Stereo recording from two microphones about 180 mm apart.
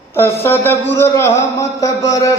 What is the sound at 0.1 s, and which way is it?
Speech, 15° left (ahead or behind).